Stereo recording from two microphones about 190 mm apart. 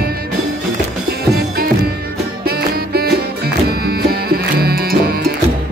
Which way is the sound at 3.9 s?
55° right (ahead or behind).